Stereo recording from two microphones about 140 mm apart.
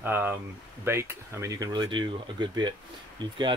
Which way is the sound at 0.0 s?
15° right (ahead or behind).